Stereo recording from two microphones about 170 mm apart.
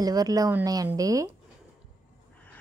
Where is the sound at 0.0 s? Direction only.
20° right (ahead or behind).